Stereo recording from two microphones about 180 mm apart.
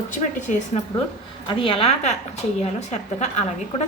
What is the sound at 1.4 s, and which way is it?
A woman's voice, 30° left (ahead or behind).